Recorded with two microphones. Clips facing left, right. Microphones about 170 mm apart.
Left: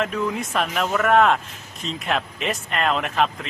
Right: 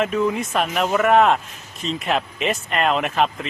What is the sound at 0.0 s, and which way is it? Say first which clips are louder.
Speech: right 4 dB; centre (ahead or behind).